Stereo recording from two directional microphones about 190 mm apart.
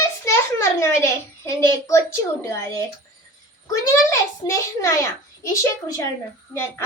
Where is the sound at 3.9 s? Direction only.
15° left (ahead or behind).